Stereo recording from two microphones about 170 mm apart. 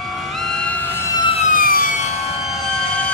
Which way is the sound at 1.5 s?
55° left (ahead or behind).